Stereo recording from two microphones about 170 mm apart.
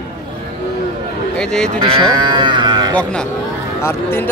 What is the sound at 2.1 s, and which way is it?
Speech, 25° right (ahead or behind).